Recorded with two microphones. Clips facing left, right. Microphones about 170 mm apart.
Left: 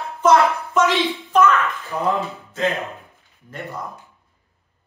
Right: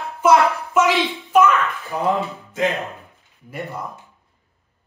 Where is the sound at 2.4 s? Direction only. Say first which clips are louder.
Right 2 dB; 15° right (ahead or behind).